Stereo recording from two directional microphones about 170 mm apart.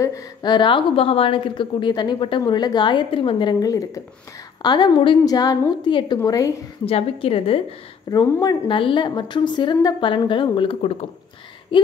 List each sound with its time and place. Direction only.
0.0 s a woman's voice: 20° left (ahead or behind)
6.9 s a woman's voice: 35° left (ahead or behind)
8.1 s a woman's voice: 20° left (ahead or behind)
11.7 s a sound: 30° left (ahead or behind)